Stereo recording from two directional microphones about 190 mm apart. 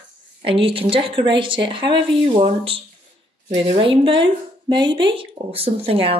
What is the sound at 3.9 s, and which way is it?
Speech, 25° right (ahead or behind).